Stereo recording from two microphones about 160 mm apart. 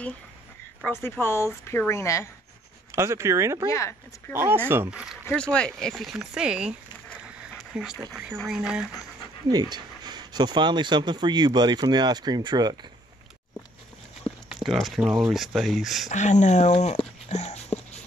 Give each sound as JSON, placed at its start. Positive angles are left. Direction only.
{"t": 0.8, "sound": "a woman's voice", "side_deg": 15}
{"t": 2.9, "sound": "speech", "side_deg": -20}
{"t": 5.3, "sound": "speech", "side_deg": 5}
{"t": 7.5, "sound": "dog", "side_deg": -5}
{"t": 8.1, "sound": "speech", "side_deg": -5}
{"t": 9.5, "sound": "speech", "side_deg": -25}
{"t": 14.2, "sound": "speech", "side_deg": 0}
{"t": 16.1, "sound": "speech", "side_deg": 50}